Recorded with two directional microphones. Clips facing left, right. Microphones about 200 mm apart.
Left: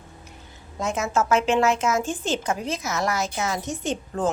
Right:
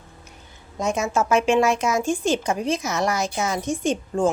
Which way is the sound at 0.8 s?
15° right (ahead or behind).